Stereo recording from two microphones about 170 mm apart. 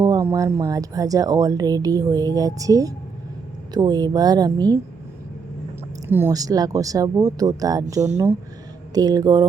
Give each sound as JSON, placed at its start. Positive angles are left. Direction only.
{"t": 0.0, "sound": "speech", "side_deg": -20}
{"t": 6.1, "sound": "speech", "side_deg": -15}